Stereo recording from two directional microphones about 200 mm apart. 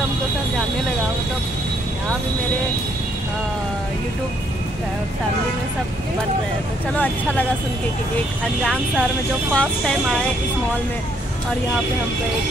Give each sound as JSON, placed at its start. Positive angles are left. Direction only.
{"t": 6.9, "sound": "speech", "side_deg": 5}
{"t": 9.5, "sound": "speech", "side_deg": 5}